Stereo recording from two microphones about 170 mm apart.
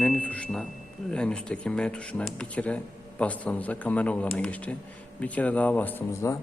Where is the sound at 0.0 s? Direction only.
10° left (ahead or behind).